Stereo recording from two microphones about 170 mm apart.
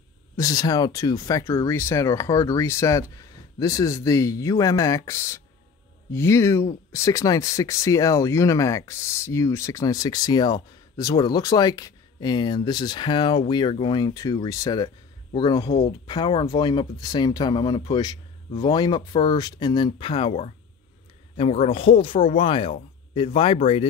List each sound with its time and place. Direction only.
0.4 s speech: 20° left (ahead or behind)